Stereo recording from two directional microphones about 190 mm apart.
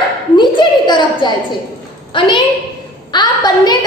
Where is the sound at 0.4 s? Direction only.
25° left (ahead or behind).